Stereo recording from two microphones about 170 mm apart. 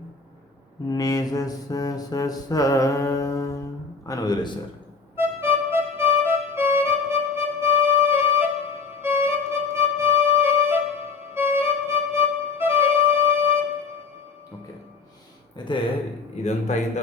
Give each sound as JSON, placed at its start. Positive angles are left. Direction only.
{"t": 0.9, "sound": "mantra", "side_deg": 20}
{"t": 5.1, "sound": "music", "side_deg": -15}
{"t": 15.5, "sound": "a sound", "side_deg": 30}
{"t": 16.7, "sound": "a man's voice", "side_deg": 45}